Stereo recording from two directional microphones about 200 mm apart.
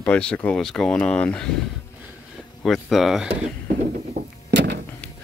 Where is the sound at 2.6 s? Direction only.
Centre (ahead or behind).